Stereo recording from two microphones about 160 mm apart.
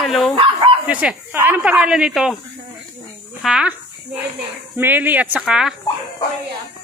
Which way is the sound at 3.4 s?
5° right (ahead or behind).